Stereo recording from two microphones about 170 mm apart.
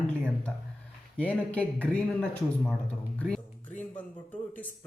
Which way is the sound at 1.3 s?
10° left (ahead or behind).